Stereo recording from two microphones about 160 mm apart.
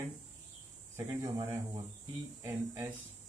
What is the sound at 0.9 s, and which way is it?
Speech, 15° right (ahead or behind).